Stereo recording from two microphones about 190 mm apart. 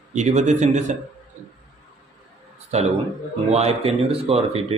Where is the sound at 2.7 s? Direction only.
35° right (ahead or behind).